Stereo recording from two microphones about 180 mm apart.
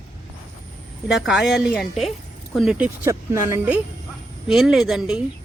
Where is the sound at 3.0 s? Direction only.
15° right (ahead or behind).